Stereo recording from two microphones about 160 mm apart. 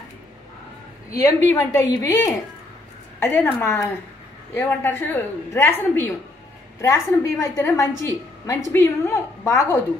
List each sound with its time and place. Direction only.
1.1 s a woman's voice: 20° left (ahead or behind)